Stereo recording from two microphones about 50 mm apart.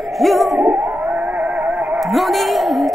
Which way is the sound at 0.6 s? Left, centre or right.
Right.